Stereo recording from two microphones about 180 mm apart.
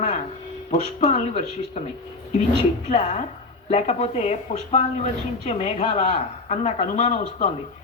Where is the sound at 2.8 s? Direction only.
40° left (ahead or behind).